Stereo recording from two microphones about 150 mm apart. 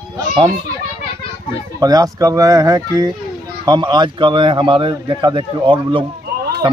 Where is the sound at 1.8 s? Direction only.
25° right (ahead or behind).